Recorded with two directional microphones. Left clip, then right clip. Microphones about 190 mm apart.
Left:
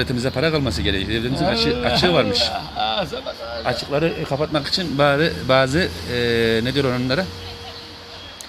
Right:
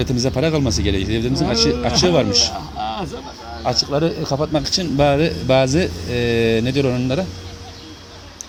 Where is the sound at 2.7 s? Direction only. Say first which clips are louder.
Left 3 dB; 10° left (ahead or behind).